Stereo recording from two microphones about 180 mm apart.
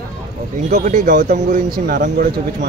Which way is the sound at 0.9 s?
45° right (ahead or behind).